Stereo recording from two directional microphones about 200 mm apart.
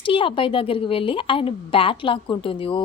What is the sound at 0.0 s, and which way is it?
Speech, 25° left (ahead or behind).